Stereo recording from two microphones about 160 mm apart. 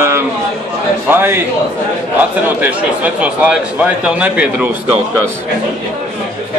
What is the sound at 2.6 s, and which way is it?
A man's voice, 10° right (ahead or behind).